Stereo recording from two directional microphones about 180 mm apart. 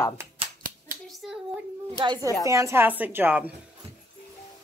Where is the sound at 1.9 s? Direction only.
20° right (ahead or behind).